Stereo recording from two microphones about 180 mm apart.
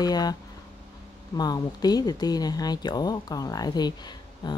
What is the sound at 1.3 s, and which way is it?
Speech, 20° left (ahead or behind).